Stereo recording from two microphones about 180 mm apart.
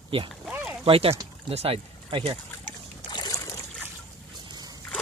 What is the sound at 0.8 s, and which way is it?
Speech, 30° right (ahead or behind).